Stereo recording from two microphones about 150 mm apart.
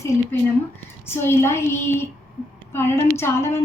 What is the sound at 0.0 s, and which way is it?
A woman's voice, 20° left (ahead or behind).